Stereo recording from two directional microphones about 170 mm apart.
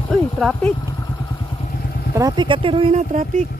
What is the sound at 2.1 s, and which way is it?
Speech, 25° right (ahead or behind).